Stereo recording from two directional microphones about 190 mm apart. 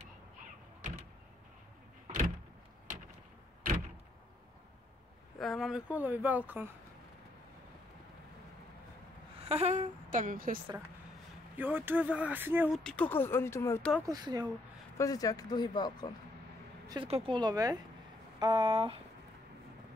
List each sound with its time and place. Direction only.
5.4 s speech: centre (ahead or behind)
9.4 s speech: 35° right (ahead or behind)
11.5 s speech: 10° right (ahead or behind)
12.7 s speech: 5° left (ahead or behind)
14.0 s speech: 20° right (ahead or behind)
15.0 s speech: 20° left (ahead or behind)
16.8 s speech: 20° right (ahead or behind)